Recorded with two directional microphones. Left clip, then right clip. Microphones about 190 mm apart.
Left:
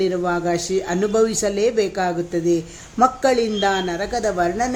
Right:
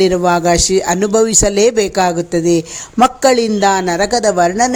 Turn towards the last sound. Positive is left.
turn(degrees=-40)  # may be behind; listen again after turning